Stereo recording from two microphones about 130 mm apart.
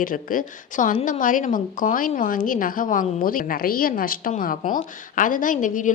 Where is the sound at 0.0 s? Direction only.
90° left.